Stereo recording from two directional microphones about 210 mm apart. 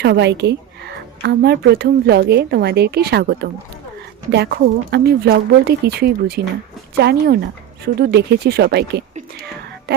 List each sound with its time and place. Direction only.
0.0 s a woman's voice: 55° right (ahead or behind)